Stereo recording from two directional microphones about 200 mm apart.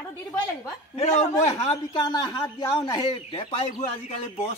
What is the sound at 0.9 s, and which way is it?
A man's voice, 30° left (ahead or behind).